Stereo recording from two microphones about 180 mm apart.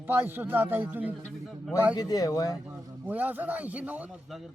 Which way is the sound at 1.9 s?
20° left (ahead or behind).